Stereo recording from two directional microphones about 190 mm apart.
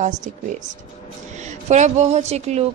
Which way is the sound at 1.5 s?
40° right (ahead or behind).